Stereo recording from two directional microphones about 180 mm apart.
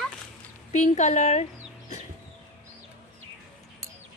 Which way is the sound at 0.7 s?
40° left (ahead or behind).